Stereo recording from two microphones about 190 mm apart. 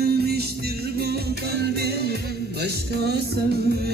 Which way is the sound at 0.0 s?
55° right (ahead or behind).